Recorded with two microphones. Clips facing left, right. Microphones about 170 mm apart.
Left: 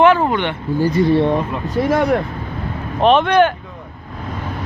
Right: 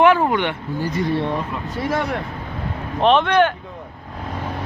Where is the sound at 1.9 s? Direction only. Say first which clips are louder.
Left 7 dB; 45° left (ahead or behind).